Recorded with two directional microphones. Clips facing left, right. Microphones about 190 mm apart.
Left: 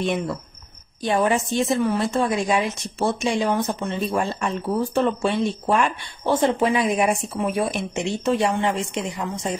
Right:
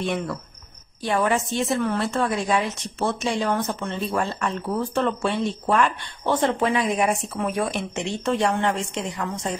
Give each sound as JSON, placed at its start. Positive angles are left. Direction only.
{"t": 0.0, "sound": "speech", "side_deg": 15}